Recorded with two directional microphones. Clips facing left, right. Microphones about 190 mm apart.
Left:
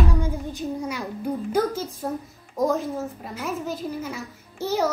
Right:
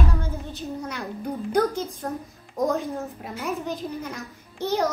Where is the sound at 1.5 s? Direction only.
5° left (ahead or behind).